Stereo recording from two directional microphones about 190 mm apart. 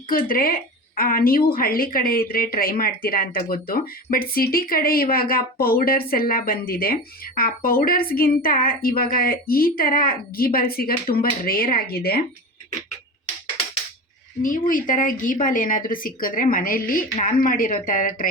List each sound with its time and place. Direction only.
0.1 s a woman's voice: 50° left (ahead or behind)
14.4 s a woman's voice: 45° left (ahead or behind)